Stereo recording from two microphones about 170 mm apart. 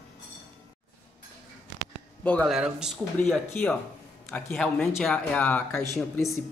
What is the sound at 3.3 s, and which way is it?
Speech, 10° left (ahead or behind).